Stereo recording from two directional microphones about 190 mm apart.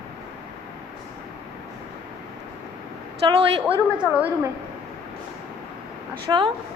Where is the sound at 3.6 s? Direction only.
10° right (ahead or behind).